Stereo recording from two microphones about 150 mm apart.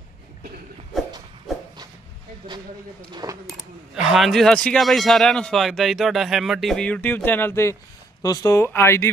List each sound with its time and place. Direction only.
2.4 s speech: 30° right (ahead or behind)
3.4 s speech: centre (ahead or behind); by 9.1 s 15° left (ahead or behind)